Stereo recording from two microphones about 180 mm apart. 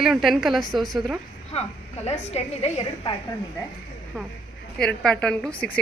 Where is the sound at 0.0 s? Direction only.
Centre (ahead or behind).